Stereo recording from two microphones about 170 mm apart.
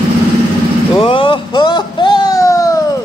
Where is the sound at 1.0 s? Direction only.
30° left (ahead or behind).